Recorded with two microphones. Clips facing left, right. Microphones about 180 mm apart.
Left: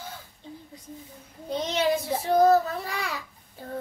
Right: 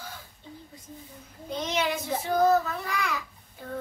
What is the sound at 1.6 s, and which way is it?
Child singing, 35° left (ahead or behind).